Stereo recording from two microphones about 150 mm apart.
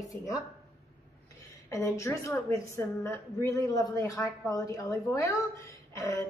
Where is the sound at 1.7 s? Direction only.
20° left (ahead or behind).